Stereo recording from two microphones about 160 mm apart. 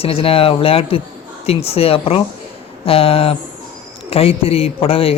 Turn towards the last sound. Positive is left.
turn(degrees=35)  # may be behind; listen again after turning